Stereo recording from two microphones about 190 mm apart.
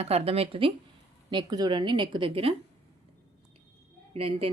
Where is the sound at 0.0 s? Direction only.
30° right (ahead or behind).